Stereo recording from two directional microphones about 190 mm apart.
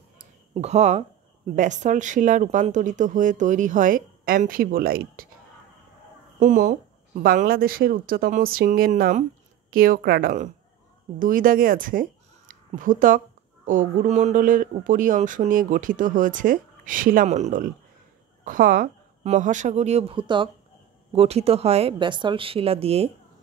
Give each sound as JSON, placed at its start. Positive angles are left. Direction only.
{"t": 0.6, "sound": "speech", "side_deg": -35}
{"t": 6.4, "sound": "speech", "side_deg": -45}